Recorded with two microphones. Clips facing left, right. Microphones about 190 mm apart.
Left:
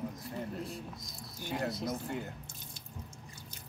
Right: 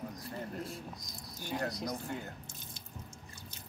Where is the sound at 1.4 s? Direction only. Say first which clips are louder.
Left 1 dB; 20° left (ahead or behind).